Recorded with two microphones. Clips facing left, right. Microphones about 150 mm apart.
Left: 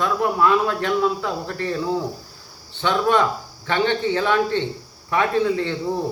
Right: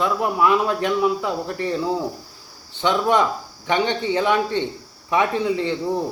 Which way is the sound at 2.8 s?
15° right (ahead or behind).